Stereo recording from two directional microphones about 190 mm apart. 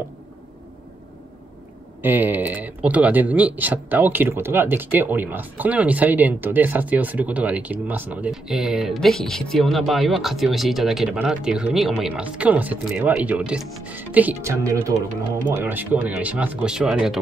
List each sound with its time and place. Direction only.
2.0 s a man's voice: 10° right (ahead or behind)